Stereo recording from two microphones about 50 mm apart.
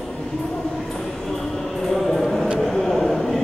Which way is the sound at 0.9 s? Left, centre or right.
Centre.